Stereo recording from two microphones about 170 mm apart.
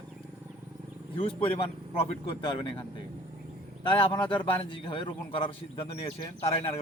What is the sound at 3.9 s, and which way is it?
A man's voice, 30° left (ahead or behind).